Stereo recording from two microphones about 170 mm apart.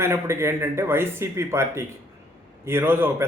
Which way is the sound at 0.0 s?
15° right (ahead or behind).